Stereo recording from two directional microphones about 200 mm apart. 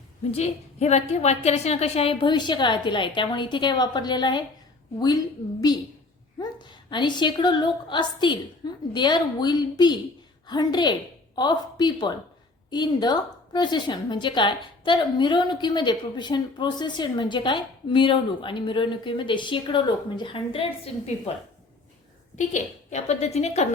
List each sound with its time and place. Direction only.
0.3 s a woman's voice: 30° left (ahead or behind)
6.4 s a woman's voice: 20° left (ahead or behind)
22.4 s a woman's voice: 35° left (ahead or behind)